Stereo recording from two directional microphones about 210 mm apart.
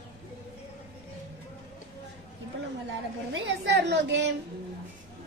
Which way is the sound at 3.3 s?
55° right (ahead or behind).